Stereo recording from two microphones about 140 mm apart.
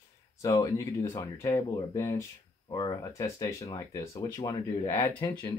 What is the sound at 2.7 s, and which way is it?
Speech, 30° left (ahead or behind).